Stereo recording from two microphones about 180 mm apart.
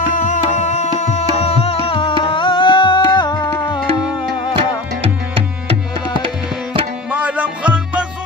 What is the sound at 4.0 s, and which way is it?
Music, 5° right (ahead or behind).